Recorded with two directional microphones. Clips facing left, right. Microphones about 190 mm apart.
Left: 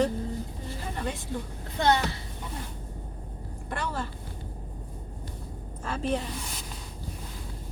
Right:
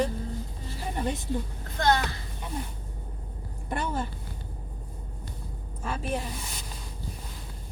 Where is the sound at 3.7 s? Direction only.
20° right (ahead or behind).